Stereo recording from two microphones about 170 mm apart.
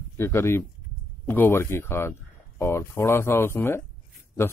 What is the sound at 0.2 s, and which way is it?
Speech, 15° left (ahead or behind).